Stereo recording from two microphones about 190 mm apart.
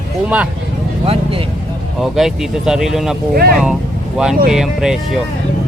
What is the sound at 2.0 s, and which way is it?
Speech, centre (ahead or behind).